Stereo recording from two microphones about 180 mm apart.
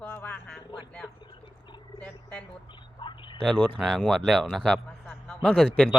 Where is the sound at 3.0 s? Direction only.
25° left (ahead or behind).